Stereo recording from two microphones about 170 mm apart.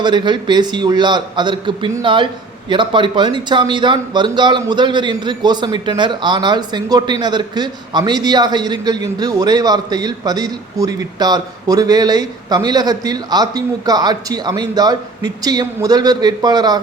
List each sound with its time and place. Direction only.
0.0 s speech: 25° right (ahead or behind)